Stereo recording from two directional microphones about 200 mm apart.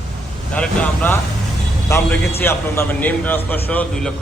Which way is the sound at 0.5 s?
5° left (ahead or behind).